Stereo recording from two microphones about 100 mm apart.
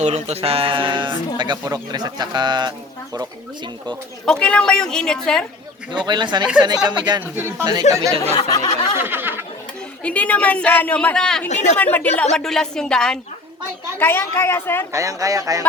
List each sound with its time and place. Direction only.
0.1 s speech: 85° right; by 1.1 s 55° right (ahead or behind)
1.4 s speech: 45° right (ahead or behind)
4.3 s a man's voice: 10° left (ahead or behind)
5.9 s speech: 50° right (ahead or behind)
7.2 s speech: 20° right (ahead or behind)
7.6 s speech: 45° right (ahead or behind)
8.1 s speech: 90° right
8.4 s a sound: 40° left (ahead or behind)
9.0 s a sound: 20° right (ahead or behind)
10.0 s a man's voice: 15° left (ahead or behind)
11.9 s a man's voice: 15° left (ahead or behind)
12.4 s a woman's voice: 5° left (ahead or behind)
14.0 s a woman's voice: 25° left (ahead or behind)
14.9 s speech: 35° right (ahead or behind)